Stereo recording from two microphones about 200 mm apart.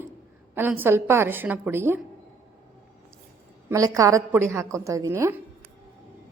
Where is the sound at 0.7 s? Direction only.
10° right (ahead or behind).